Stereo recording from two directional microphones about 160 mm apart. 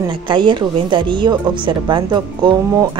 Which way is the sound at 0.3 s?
30° right (ahead or behind).